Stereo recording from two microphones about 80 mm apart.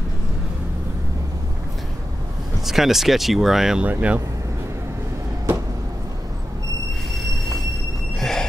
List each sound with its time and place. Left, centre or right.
2.6 s speech: centre
3.8 s speech: centre
8.2 s a sound: centre